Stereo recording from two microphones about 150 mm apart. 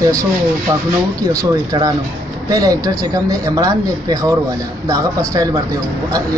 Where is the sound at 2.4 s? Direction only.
25° right (ahead or behind).